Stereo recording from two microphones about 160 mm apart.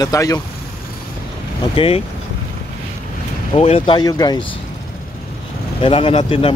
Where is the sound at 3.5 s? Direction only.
35° left (ahead or behind).